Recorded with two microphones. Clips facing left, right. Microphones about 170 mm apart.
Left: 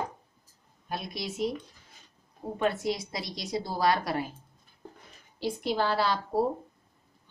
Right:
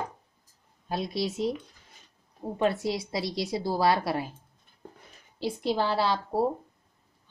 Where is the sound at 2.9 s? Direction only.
30° right (ahead or behind).